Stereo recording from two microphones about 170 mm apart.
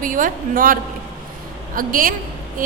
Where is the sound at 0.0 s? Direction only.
55° right (ahead or behind).